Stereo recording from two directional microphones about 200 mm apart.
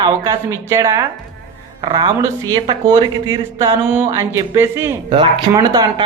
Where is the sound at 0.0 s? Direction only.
15° right (ahead or behind).